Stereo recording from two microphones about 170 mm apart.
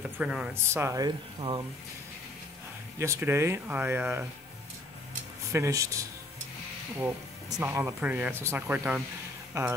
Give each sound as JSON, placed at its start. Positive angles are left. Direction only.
{"t": 0.2, "sound": "speech", "side_deg": -5}
{"t": 3.0, "sound": "speech", "side_deg": -15}
{"t": 5.5, "sound": "speech", "side_deg": -15}